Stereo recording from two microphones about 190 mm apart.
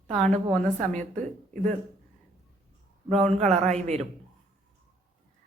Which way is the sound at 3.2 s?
35° right (ahead or behind).